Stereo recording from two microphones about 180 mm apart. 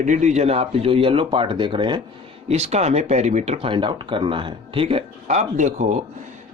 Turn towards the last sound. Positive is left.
turn(degrees=-40)  # may be behind; listen again after turning